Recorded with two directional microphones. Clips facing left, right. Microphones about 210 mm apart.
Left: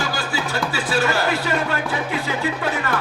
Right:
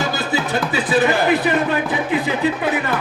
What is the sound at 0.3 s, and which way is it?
Speech, 20° right (ahead or behind).